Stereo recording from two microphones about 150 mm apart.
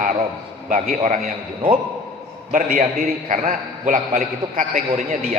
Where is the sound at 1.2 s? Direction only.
70° right (ahead or behind).